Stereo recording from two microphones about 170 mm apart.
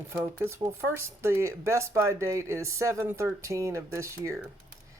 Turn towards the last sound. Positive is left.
turn(degrees=-15)  # may be behind; listen again after turning